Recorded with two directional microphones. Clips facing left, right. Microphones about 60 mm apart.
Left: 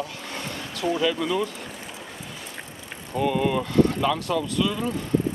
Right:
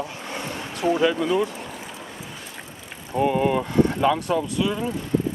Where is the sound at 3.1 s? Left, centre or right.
Right.